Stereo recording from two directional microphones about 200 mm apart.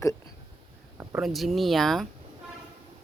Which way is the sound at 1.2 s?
Centre (ahead or behind).